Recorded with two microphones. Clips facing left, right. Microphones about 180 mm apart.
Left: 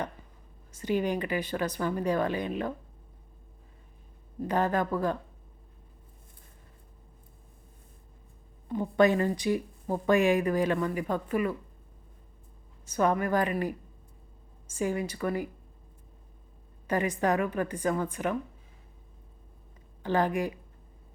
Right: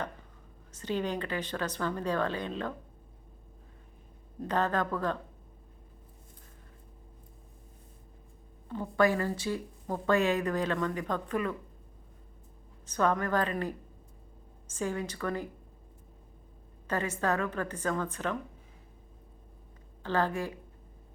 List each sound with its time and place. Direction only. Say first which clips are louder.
0.7 s a woman's voice: left 4 dB; 10° left (ahead or behind)
4.4 s a woman's voice: left 2 dB; 10° left (ahead or behind)
8.7 s a woman's voice: left 4 dB; 20° left (ahead or behind)
12.8 s a woman's voice: left 2 dB; 10° left (ahead or behind)
16.8 s a woman's voice: left 4 dB; 15° left (ahead or behind)
20.0 s a woman's voice: left 3 dB; 15° left (ahead or behind)